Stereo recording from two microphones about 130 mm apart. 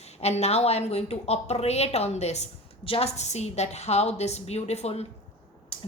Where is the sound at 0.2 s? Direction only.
55° left (ahead or behind).